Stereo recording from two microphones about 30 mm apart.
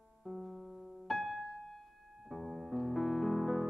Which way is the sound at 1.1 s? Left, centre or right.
Centre.